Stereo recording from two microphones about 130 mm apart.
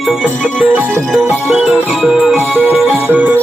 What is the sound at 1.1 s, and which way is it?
Music, centre (ahead or behind).